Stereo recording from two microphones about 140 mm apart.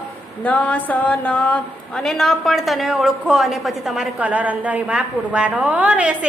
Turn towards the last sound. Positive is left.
turn(degrees=-10)  # may be behind; listen again after turning